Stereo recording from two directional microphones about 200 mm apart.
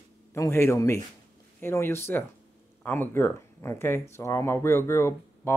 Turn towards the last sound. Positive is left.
turn(degrees=15)  # may be behind; listen again after turning